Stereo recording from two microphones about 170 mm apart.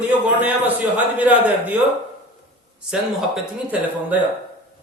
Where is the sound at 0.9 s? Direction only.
10° right (ahead or behind).